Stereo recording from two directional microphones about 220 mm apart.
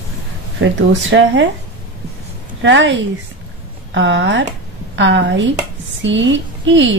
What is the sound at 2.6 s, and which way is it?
A woman's voice, 55° right (ahead or behind).